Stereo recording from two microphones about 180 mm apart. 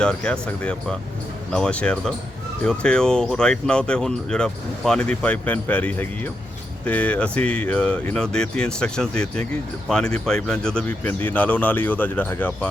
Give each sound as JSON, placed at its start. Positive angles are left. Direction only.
{"t": 0.0, "sound": "speech", "side_deg": 5}